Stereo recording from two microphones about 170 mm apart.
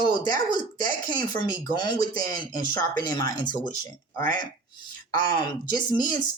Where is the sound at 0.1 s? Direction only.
25° left (ahead or behind).